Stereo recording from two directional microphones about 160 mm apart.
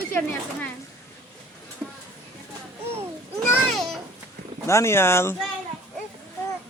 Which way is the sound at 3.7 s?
Centre (ahead or behind).